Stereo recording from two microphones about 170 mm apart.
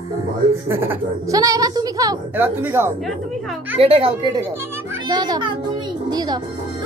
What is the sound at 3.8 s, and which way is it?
A woman's voice, 35° right (ahead or behind).